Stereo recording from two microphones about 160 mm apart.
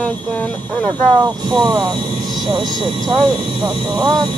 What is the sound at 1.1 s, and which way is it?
Speech, 30° right (ahead or behind).